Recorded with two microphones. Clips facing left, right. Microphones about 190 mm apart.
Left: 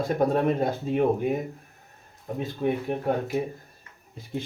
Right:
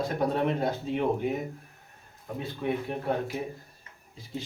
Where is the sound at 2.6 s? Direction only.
40° left (ahead or behind).